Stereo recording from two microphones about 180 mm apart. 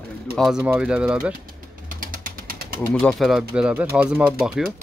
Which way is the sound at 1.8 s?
50° right (ahead or behind).